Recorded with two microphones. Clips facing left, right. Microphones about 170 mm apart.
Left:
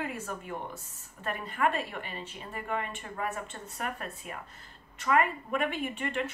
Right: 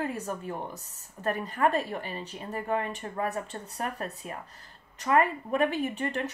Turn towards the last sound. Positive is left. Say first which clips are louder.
# right 3 dB
turn(degrees=-40)  # may be behind; listen again after turning